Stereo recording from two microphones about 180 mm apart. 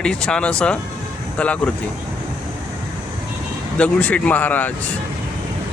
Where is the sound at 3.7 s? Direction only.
5° left (ahead or behind).